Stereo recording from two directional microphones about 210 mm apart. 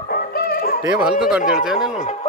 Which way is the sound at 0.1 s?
45° left (ahead or behind).